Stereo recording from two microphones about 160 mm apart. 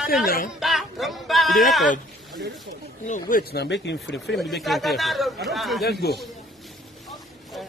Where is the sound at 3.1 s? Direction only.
55° left (ahead or behind); by 4.4 s 90° left.